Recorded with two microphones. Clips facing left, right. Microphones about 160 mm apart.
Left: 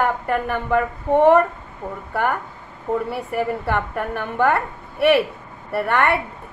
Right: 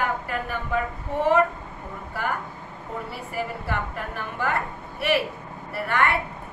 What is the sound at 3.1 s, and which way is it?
A woman's voice, 60° left (ahead or behind).